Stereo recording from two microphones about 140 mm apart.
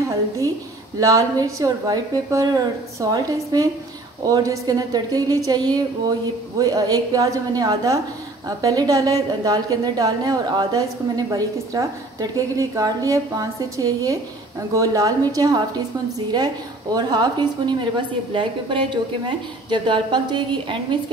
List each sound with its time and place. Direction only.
0.9 s a woman's voice: 25° right (ahead or behind)
16.9 s a woman's voice: 30° right (ahead or behind)